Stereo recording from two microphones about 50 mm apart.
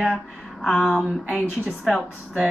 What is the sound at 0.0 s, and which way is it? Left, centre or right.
Speech, centre.